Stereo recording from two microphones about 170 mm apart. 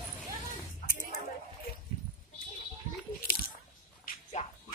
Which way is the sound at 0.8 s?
55° left (ahead or behind).